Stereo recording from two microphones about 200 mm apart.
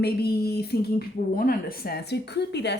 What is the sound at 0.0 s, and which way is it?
A woman's voice, 50° left (ahead or behind).